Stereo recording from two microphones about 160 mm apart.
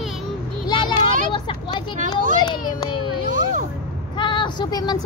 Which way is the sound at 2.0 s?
55° right (ahead or behind).